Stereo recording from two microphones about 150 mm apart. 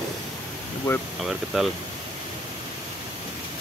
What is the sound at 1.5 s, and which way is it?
Speech, centre (ahead or behind).